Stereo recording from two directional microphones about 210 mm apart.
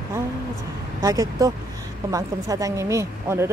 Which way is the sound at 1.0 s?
15° right (ahead or behind).